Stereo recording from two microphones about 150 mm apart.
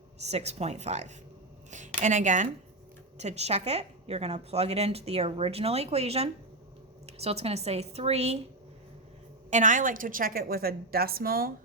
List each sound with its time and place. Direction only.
0.2 s a woman's voice: 45° right (ahead or behind)
9.5 s a woman's voice: 55° right (ahead or behind); by 11.5 s 80° right